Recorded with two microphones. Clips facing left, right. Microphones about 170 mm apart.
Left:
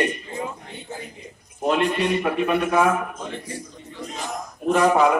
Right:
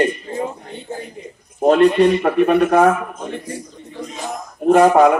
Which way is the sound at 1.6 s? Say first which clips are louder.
Right 9 dB; 40° right (ahead or behind).